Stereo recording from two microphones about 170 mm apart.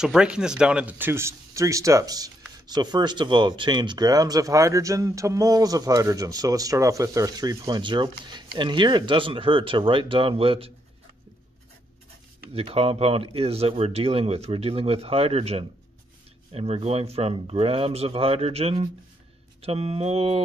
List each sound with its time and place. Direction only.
0.0 s speech: 5° right (ahead or behind); by 10.7 s 35° right (ahead or behind)
12.5 s speech: 35° right (ahead or behind)